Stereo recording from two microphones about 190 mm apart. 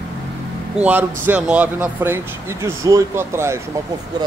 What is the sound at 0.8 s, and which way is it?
Speech, 10° right (ahead or behind).